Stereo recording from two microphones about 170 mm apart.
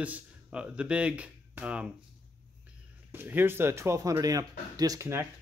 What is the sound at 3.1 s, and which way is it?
Speech, 10° right (ahead or behind).